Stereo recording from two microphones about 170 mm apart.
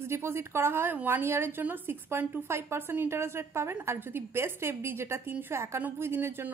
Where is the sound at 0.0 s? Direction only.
15° right (ahead or behind).